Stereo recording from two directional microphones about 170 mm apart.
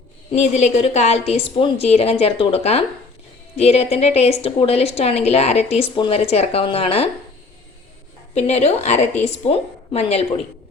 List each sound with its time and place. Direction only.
0.3 s a woman's voice: 40° left (ahead or behind)
8.4 s a woman's voice: 40° left (ahead or behind)